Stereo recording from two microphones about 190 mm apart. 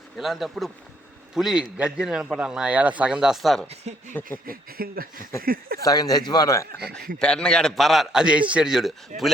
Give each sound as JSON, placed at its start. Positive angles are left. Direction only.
{"t": 0.2, "sound": "a man's voice", "side_deg": 0}
{"t": 4.4, "sound": "a sound", "side_deg": -50}
{"t": 5.8, "sound": "a man's voice", "side_deg": 20}
{"t": 7.2, "sound": "a man's voice", "side_deg": 5}